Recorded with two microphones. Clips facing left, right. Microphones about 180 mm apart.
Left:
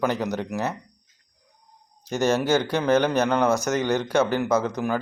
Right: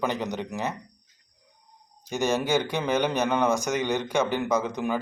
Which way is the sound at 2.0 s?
15° right (ahead or behind).